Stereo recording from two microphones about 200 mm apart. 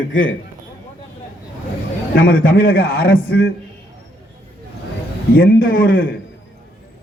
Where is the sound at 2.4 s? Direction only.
45° left (ahead or behind).